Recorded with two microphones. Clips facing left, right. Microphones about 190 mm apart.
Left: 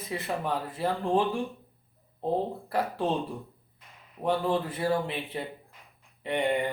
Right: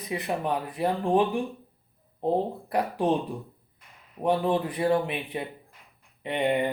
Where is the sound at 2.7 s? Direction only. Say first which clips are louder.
Right 3 dB; 15° right (ahead or behind).